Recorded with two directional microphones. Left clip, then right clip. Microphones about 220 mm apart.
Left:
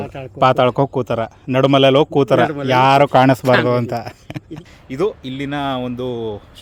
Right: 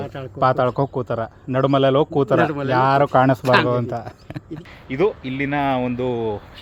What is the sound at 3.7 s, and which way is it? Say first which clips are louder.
Speech: left 4 dB; 35° left (ahead or behind).